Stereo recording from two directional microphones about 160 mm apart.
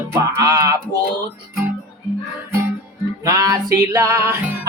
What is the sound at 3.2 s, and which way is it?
Music, 20° right (ahead or behind).